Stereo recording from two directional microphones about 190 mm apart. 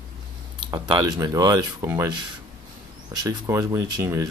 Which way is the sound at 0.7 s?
20° right (ahead or behind).